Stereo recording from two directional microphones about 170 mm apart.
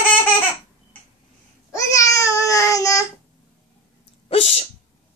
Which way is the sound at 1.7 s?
20° left (ahead or behind).